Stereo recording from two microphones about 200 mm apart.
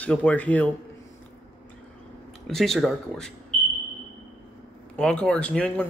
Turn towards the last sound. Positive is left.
turn(degrees=5)  # may be behind; listen again after turning